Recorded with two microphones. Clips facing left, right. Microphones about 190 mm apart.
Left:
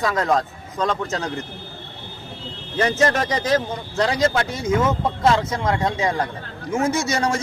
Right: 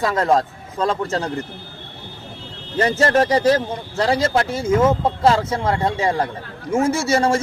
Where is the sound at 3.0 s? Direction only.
35° right (ahead or behind).